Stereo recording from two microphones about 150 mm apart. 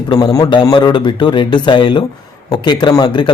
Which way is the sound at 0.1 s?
25° left (ahead or behind).